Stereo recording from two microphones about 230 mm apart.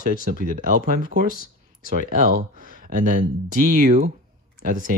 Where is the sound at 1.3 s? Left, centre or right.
Left.